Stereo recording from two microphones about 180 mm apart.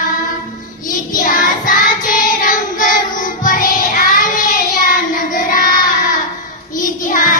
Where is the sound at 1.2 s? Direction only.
50° left (ahead or behind).